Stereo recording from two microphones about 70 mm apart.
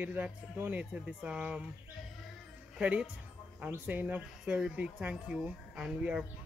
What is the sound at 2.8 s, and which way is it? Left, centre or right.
Speech, centre.